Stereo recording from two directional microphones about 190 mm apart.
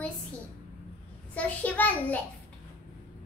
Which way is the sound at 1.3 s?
10° left (ahead or behind).